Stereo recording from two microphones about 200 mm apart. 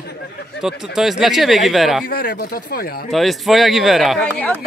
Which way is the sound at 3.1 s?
Centre (ahead or behind).